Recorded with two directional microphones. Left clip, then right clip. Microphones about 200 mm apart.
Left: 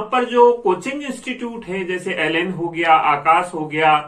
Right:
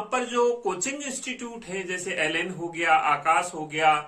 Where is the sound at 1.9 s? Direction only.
20° right (ahead or behind).